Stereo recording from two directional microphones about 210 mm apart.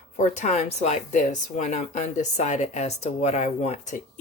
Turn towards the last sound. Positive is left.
turn(degrees=35)  # may be behind; listen again after turning